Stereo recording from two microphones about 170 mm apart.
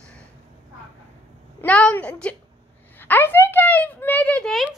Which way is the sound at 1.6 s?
10° left (ahead or behind).